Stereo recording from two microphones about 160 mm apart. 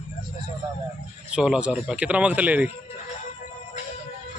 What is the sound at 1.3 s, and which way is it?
Speech, 5° right (ahead or behind).